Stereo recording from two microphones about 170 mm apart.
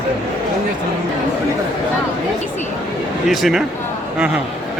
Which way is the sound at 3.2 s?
Centre (ahead or behind).